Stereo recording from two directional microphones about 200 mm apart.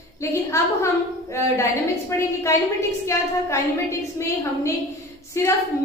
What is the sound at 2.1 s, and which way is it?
A woman's voice, 15° left (ahead or behind).